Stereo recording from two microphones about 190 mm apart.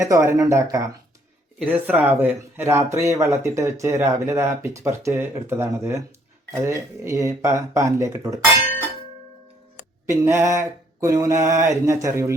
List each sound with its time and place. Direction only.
0.0 s speech: 15° right (ahead or behind)
10.1 s speech: 15° right (ahead or behind)